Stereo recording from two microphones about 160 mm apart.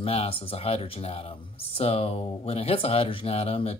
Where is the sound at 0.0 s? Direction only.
35° left (ahead or behind).